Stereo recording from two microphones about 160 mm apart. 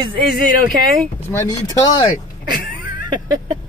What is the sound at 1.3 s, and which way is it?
Speech, 20° left (ahead or behind).